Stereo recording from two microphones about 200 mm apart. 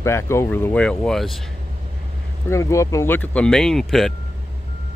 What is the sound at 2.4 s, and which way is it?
Speech, 15° left (ahead or behind).